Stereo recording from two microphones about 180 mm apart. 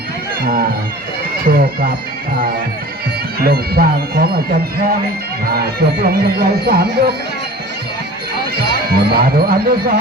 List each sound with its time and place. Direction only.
1.5 s speech: 55° right (ahead or behind)
3.4 s speech: 55° right (ahead or behind)
5.5 s speech: 60° right (ahead or behind)
8.9 s speech: 60° right (ahead or behind)